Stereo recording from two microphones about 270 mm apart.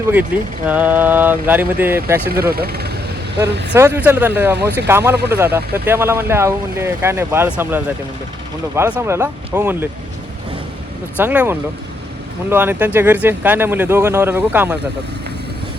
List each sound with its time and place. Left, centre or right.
0.1 s speech: centre
2.3 s speech: right
3.8 s speech: centre
11.2 s speech: centre